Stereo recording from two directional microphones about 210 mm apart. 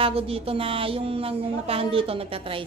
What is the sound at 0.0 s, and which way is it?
Speech, 25° right (ahead or behind).